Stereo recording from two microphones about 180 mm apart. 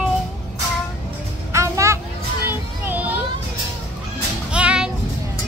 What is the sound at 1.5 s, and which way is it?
Music, 15° right (ahead or behind).